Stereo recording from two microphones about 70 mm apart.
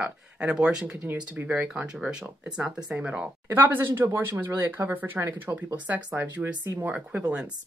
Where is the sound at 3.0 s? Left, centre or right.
Centre.